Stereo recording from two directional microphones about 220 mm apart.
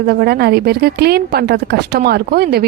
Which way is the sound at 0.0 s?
45° right (ahead or behind).